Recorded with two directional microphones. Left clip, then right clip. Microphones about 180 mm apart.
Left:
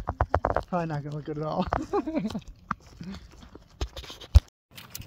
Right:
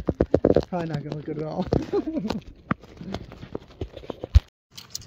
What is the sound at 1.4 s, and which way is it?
Speech, 5° left (ahead or behind).